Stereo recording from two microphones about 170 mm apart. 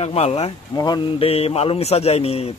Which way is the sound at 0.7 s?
25° left (ahead or behind).